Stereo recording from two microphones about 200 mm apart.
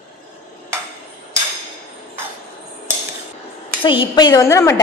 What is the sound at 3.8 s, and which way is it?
A woman's voice, 25° left (ahead or behind).